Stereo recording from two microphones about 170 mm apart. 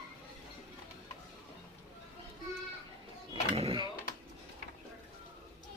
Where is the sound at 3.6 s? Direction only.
35° right (ahead or behind).